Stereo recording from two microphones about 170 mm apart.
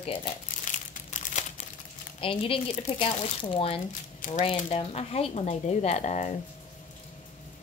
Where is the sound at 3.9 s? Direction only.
50° left (ahead or behind).